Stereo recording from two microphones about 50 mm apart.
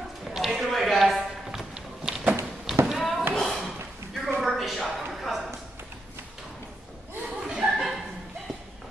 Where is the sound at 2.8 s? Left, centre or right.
Centre.